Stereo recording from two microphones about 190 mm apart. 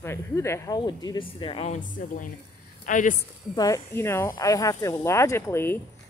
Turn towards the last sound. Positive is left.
turn(degrees=15)  # may be behind; listen again after turning